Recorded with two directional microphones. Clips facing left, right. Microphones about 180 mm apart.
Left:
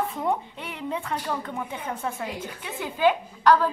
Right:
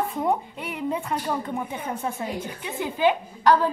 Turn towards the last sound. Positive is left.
turn(degrees=-15)  # may be behind; listen again after turning